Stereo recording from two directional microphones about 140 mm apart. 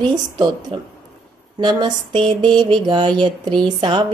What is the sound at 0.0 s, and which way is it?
A woman's voice, 35° right (ahead or behind).